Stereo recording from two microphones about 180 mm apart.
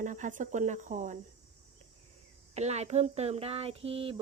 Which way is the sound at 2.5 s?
40° right (ahead or behind).